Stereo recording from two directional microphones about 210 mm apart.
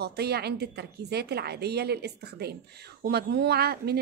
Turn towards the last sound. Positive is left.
turn(degrees=-50)  # may be behind; listen again after turning